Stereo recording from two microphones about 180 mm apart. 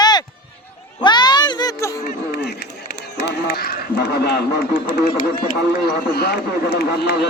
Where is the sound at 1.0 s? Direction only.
25° left (ahead or behind).